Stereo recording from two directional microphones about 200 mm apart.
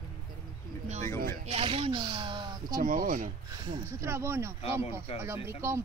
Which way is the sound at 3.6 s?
15° right (ahead or behind).